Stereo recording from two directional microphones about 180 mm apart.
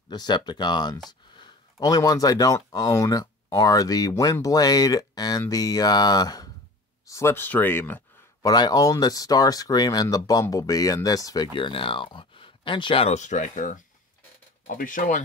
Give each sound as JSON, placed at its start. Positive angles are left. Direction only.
{"t": 0.1, "sound": "speech", "side_deg": 25}
{"t": 8.5, "sound": "speech", "side_deg": 20}